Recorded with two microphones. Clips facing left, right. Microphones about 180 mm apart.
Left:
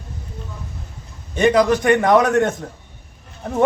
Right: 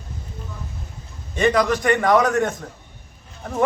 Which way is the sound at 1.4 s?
20° left (ahead or behind).